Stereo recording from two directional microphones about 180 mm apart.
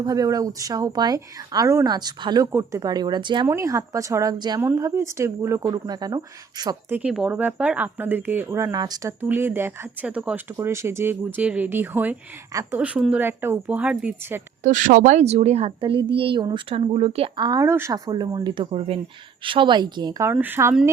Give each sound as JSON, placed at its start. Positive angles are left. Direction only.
{"t": 0.0, "sound": "speech", "side_deg": -20}
{"t": 3.4, "sound": "speech", "side_deg": -15}
{"t": 6.9, "sound": "speech", "side_deg": -5}
{"t": 14.6, "sound": "speech", "side_deg": -45}